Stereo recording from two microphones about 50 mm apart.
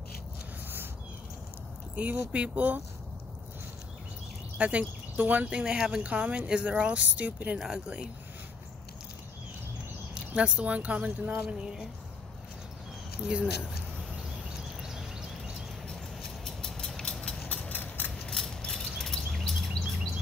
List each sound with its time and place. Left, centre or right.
2.0 s speech: right
4.6 s speech: right
5.6 s speech: centre
7.5 s speech: centre
10.3 s speech: right
11.3 s speech: centre
13.2 s speech: centre
14.8 s a sound: centre
15.9 s vehicle: centre
17.5 s a sound: left
18.4 s mechanisms: centre
18.7 s a sound: centre
19.8 s bird: centre